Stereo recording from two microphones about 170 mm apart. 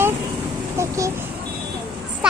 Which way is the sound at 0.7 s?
15° right (ahead or behind).